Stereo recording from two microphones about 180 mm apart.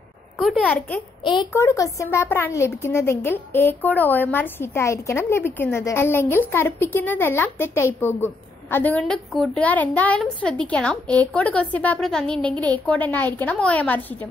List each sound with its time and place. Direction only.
0.4 s speech: 5° left (ahead or behind)
1.2 s a woman's voice: 25° left (ahead or behind); by 14.3 s 10° left (ahead or behind)